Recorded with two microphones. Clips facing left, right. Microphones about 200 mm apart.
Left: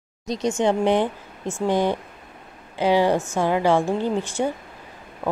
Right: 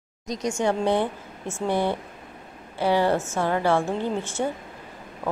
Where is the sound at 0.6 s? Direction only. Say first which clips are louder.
Left 3 dB; 20° left (ahead or behind).